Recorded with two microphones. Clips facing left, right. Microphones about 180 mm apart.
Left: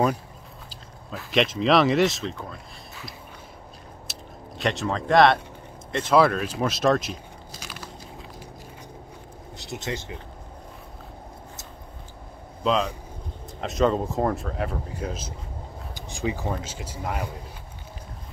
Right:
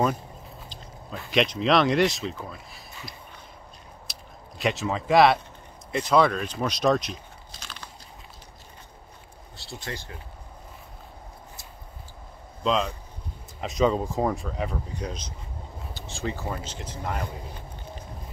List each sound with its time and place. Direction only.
1.1 s speech: centre (ahead or behind)
4.1 s biting: centre (ahead or behind)
5.9 s speech: centre (ahead or behind)
9.6 s speech: 20° left (ahead or behind)
12.6 s speech: centre (ahead or behind)